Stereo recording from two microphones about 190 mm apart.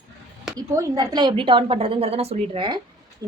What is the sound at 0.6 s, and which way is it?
A woman's voice, 20° right (ahead or behind).